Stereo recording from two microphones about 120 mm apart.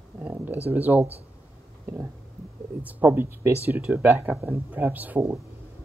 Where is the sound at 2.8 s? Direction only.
15° right (ahead or behind).